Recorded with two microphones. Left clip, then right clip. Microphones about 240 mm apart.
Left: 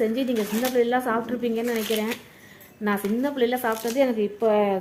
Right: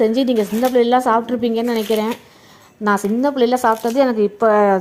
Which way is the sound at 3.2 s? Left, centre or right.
Right.